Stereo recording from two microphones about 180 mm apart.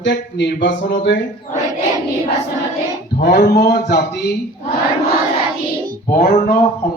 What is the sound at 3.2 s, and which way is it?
Speech, 55° left (ahead or behind).